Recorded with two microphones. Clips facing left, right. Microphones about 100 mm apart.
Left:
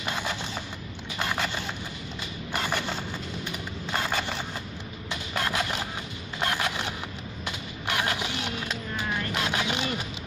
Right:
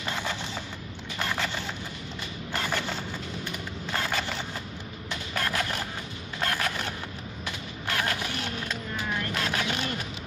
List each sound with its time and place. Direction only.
0.0 s machine gun: 15° left (ahead or behind)
1.1 s zipper: 15° left (ahead or behind)
2.5 s a sound: 15° left (ahead or behind)